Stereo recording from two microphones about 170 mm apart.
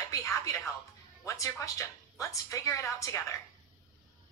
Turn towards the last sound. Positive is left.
turn(degrees=20)  # may be behind; listen again after turning